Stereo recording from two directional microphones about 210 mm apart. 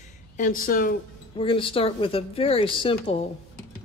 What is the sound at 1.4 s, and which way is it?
Speech, 25° left (ahead or behind).